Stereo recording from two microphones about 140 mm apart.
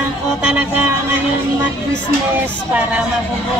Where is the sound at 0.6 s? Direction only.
15° right (ahead or behind).